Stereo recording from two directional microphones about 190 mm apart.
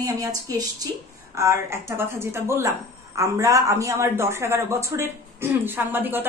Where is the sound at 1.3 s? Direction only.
15° right (ahead or behind).